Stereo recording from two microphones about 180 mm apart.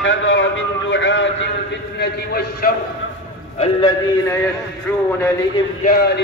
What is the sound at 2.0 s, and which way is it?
Speech, 60° left (ahead or behind).